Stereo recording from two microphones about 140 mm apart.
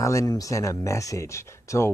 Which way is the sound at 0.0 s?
25° left (ahead or behind).